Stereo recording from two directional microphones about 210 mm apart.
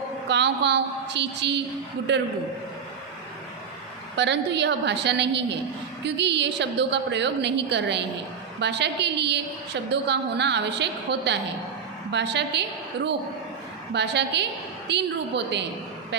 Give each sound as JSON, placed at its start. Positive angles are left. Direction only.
{"t": 0.3, "sound": "a woman's voice", "side_deg": -55}
{"t": 4.1, "sound": "a woman's voice", "side_deg": -55}
{"t": 13.9, "sound": "a woman's voice", "side_deg": -55}